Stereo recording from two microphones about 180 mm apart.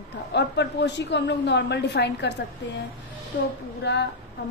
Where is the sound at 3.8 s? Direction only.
70° left (ahead or behind).